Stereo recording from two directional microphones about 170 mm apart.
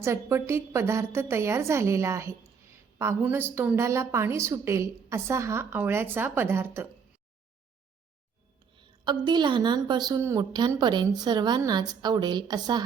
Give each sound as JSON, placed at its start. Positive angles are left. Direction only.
{"t": 0.0, "sound": "a woman's voice", "side_deg": -15}
{"t": 9.0, "sound": "a woman's voice", "side_deg": -25}